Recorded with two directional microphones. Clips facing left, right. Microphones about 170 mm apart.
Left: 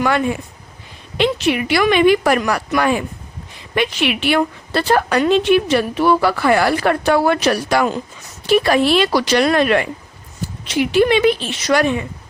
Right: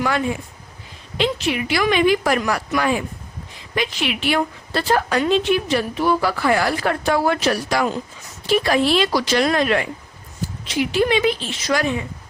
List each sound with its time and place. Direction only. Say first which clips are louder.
1.2 s a woman's voice: left 4 dB; 65° left (ahead or behind)